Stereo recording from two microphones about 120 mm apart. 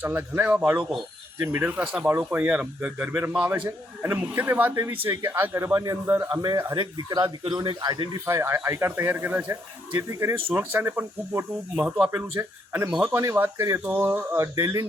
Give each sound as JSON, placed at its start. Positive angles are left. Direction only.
{"t": 0.0, "sound": "a man's voice", "side_deg": -15}
{"t": 6.7, "sound": "speech", "side_deg": -40}
{"t": 8.3, "sound": "speech", "side_deg": -20}